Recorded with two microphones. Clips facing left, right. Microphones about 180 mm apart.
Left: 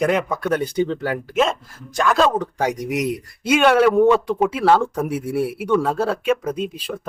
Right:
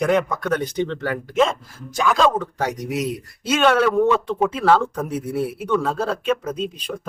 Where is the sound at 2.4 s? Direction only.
15° left (ahead or behind).